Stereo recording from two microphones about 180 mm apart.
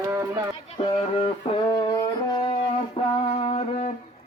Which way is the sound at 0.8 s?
30° left (ahead or behind).